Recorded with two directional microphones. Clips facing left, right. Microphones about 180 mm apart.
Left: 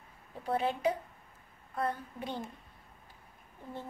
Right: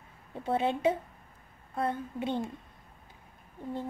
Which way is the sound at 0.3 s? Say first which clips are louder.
Right 3 dB; 25° right (ahead or behind).